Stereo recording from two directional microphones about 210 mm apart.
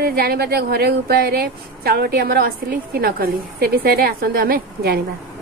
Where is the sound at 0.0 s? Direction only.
45° right (ahead or behind).